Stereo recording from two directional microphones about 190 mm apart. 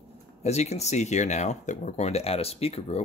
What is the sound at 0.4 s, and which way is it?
Speech, 35° left (ahead or behind).